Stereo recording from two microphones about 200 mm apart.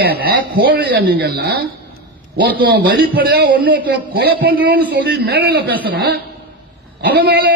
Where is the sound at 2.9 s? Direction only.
50° right (ahead or behind).